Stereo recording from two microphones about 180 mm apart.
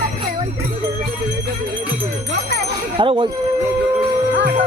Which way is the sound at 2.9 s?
30° right (ahead or behind).